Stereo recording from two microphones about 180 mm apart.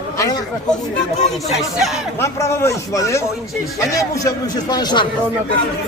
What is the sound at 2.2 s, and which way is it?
A man's voice, 15° left (ahead or behind).